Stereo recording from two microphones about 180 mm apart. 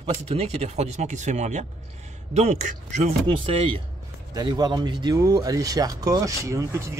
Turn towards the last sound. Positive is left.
turn(degrees=-15)  # may be behind; listen again after turning